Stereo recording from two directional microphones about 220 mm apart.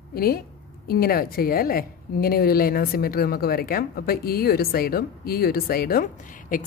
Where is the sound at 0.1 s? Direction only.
45° left (ahead or behind).